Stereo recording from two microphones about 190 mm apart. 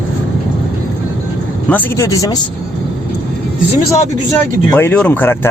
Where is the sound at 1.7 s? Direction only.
15° left (ahead or behind).